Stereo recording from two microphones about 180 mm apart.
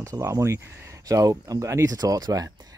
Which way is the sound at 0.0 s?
15° right (ahead or behind).